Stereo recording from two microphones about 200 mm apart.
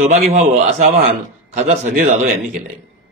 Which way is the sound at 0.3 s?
35° right (ahead or behind).